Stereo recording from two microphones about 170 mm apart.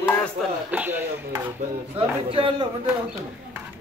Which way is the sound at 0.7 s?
10° right (ahead or behind).